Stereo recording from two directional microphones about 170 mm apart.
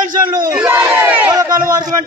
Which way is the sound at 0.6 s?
15° right (ahead or behind).